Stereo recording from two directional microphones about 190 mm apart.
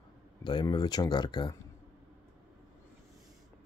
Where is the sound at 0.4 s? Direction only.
25° left (ahead or behind).